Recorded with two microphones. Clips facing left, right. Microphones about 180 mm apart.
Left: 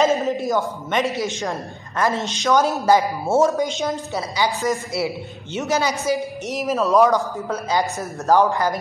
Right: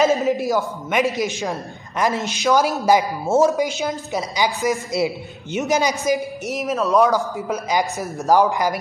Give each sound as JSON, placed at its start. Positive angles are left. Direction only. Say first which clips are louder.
{"t": 0.0, "sound": "a man's voice", "louder": "right 1 dB", "side_deg": -5}
{"t": 6.5, "sound": "speech", "louder": "left 1 dB", "side_deg": 0}
{"t": 7.3, "sound": "a man's voice", "louder": "right 1 dB", "side_deg": -15}